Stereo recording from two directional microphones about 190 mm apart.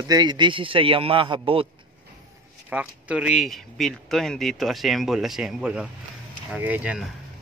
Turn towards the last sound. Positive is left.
turn(degrees=-5)  # may be behind; listen again after turning